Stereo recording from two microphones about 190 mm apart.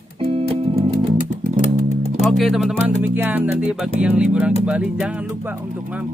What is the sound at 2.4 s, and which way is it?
Speech, centre (ahead or behind).